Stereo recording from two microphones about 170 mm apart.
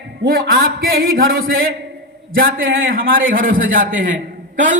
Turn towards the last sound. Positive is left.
turn(degrees=-50)  # may be behind; listen again after turning